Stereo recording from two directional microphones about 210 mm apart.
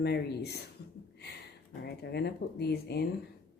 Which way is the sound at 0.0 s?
50° left (ahead or behind).